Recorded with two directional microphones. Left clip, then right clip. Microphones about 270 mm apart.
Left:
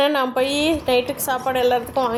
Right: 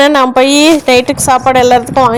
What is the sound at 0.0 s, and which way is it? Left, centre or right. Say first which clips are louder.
A woman's voice: right 12 dB; left.